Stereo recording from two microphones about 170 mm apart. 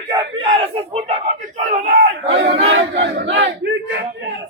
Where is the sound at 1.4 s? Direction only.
50° right (ahead or behind).